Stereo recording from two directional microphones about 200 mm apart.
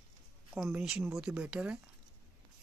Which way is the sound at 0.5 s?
Centre (ahead or behind).